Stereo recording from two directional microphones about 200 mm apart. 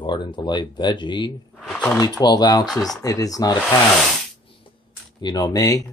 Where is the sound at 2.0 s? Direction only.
20° left (ahead or behind).